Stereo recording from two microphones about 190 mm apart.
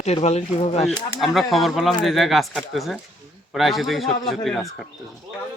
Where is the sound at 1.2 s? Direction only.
Centre (ahead or behind).